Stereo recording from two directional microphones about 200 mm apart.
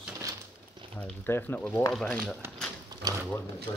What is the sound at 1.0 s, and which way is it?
Speech, 10° left (ahead or behind).